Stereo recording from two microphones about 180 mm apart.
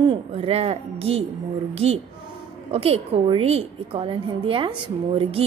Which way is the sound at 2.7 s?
35° right (ahead or behind).